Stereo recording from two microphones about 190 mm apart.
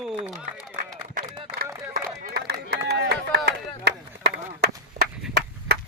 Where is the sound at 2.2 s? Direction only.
55° right (ahead or behind).